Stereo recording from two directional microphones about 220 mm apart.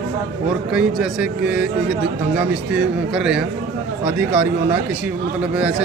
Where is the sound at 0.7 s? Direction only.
5° right (ahead or behind).